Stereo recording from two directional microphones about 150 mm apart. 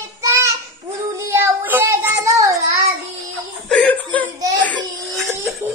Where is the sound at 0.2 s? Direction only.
20° right (ahead or behind).